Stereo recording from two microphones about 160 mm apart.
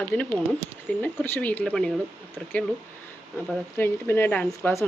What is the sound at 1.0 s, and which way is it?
Speech, 10° left (ahead or behind).